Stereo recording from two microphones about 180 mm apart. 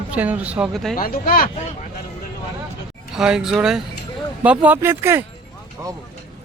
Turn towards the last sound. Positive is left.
turn(degrees=-15)  # may be behind; listen again after turning